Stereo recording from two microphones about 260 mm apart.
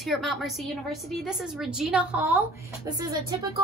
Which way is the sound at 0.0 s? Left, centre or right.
Centre.